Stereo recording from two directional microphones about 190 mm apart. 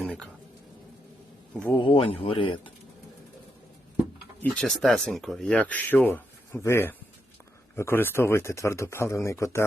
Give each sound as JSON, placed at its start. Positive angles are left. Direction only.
{"t": 0.0, "sound": "a sound", "side_deg": 0}
{"t": 1.8, "sound": "speech", "side_deg": 30}
{"t": 4.5, "sound": "speech", "side_deg": 0}